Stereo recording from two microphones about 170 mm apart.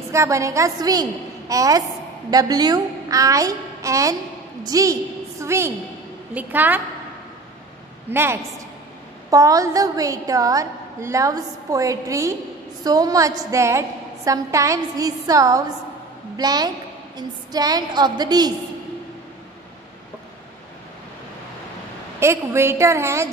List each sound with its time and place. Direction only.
0.1 s a woman's voice: 15° right (ahead or behind)
8.1 s a woman's voice: 15° right (ahead or behind)
22.2 s a woman's voice: 15° right (ahead or behind)